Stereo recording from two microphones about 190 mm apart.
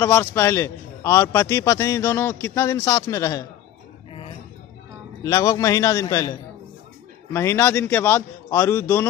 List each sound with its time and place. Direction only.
0.0 s a man's voice: 15° left (ahead or behind)
5.2 s a man's voice: 20° left (ahead or behind)
7.3 s a man's voice: 15° left (ahead or behind)